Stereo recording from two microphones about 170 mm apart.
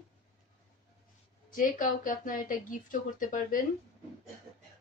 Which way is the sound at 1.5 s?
50° left (ahead or behind).